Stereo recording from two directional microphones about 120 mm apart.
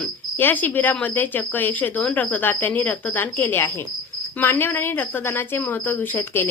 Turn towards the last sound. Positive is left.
turn(degrees=15)  # may be behind; listen again after turning